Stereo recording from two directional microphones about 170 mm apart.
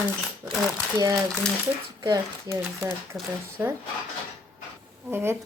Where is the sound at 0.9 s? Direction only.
20° right (ahead or behind).